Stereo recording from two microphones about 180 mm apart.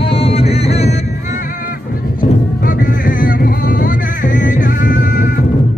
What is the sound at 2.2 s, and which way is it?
Music, 50° left (ahead or behind).